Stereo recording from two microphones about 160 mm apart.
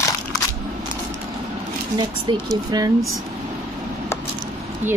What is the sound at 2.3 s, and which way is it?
Speech, 30° right (ahead or behind).